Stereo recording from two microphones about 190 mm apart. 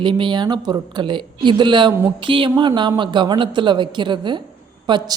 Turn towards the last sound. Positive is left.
turn(degrees=-25)  # may be behind; listen again after turning